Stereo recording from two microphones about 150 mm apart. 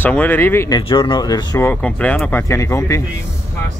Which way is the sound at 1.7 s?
10° left (ahead or behind).